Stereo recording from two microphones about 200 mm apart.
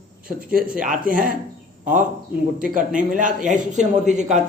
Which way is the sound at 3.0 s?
40° right (ahead or behind).